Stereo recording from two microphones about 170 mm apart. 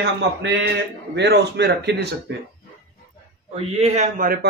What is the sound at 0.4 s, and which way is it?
A man's voice, 90° right.